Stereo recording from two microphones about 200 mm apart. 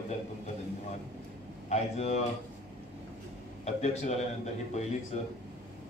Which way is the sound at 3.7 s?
35° left (ahead or behind).